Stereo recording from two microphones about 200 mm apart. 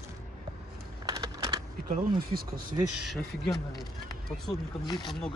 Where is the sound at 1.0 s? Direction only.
20° right (ahead or behind).